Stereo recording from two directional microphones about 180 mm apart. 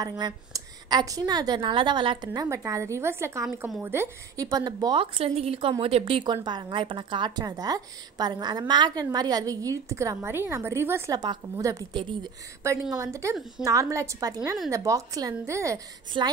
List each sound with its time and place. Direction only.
0.2 s a woman's voice: 25° right (ahead or behind)